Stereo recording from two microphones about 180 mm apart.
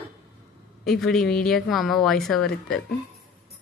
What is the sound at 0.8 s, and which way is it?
Speech, centre (ahead or behind).